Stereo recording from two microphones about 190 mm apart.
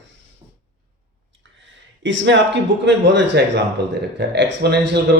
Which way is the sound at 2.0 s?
75° right (ahead or behind).